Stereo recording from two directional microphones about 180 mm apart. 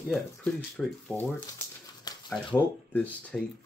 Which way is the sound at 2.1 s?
20° left (ahead or behind).